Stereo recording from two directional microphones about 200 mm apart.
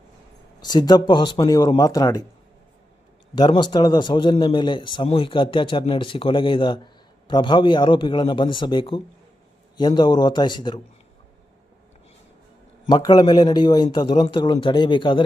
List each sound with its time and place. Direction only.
0.6 s a man's voice: 20° left (ahead or behind)
3.3 s a man's voice: 20° left (ahead or behind)
12.9 s a man's voice: 20° left (ahead or behind)